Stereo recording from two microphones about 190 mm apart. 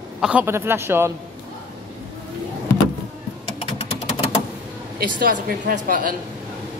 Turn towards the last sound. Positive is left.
turn(degrees=-45)  # may be behind; listen again after turning